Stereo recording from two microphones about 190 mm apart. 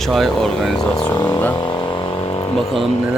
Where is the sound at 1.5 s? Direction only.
25° left (ahead or behind).